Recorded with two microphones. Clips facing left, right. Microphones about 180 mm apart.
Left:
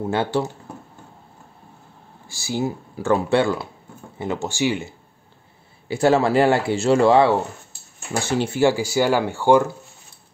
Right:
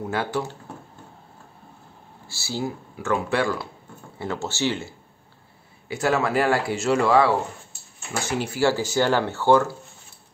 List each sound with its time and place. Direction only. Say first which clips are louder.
0.0 s speech: left 4 dB; 25° left (ahead or behind)
2.2 s speech: left 4 dB; 15° left (ahead or behind)
3.0 s speech: left 5 dB; 30° left (ahead or behind); by 4.9 s 15° left (ahead or behind)
5.9 s speech: left 6 dB; 30° left (ahead or behind)